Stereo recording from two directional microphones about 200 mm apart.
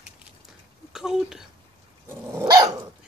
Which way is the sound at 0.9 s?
Centre (ahead or behind).